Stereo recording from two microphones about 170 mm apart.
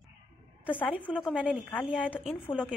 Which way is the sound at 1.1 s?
5° right (ahead or behind).